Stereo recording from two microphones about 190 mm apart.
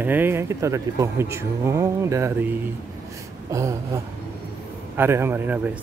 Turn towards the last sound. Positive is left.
turn(degrees=-10)  # may be behind; listen again after turning